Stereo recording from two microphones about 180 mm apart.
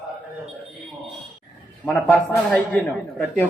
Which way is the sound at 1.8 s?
10° left (ahead or behind).